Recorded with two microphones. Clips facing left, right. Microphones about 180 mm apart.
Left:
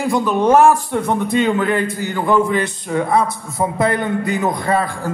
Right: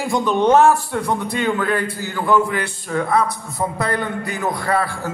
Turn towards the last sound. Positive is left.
turn(degrees=20)  # may be behind; listen again after turning